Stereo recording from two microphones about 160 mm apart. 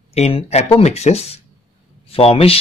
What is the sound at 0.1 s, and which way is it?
Speech, 35° left (ahead or behind).